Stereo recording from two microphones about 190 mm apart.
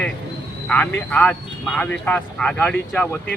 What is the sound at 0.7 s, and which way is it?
Speech, 10° left (ahead or behind).